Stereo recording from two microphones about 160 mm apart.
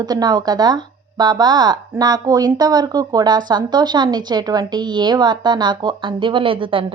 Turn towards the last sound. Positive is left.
turn(degrees=-35)  # may be behind; listen again after turning